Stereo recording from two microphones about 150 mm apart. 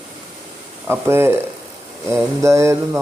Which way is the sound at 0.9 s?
15° right (ahead or behind).